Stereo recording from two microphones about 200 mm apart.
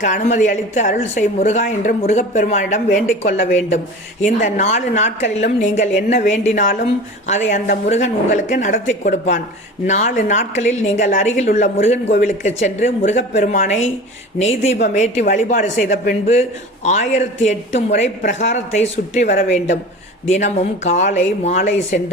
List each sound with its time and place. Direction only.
0.0 s speech: 40° left (ahead or behind)